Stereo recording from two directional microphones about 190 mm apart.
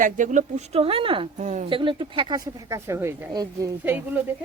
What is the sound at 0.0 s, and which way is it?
A woman's voice, 40° right (ahead or behind).